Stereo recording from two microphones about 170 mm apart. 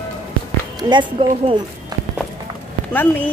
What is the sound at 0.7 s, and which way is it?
Speech, 25° right (ahead or behind).